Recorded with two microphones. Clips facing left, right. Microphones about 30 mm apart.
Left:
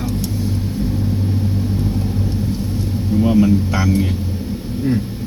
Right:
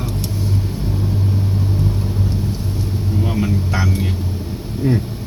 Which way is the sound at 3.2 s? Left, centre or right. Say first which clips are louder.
Left 8 dB; centre.